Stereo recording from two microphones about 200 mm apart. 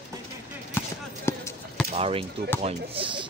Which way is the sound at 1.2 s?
10° left (ahead or behind).